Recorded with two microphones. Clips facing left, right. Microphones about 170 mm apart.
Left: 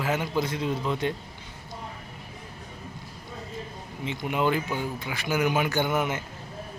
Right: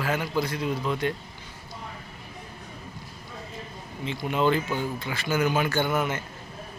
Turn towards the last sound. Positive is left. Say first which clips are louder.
# even
turn(degrees=15)  # may be behind; listen again after turning